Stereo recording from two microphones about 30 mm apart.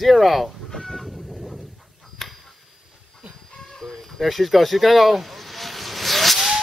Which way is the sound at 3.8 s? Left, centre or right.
Centre.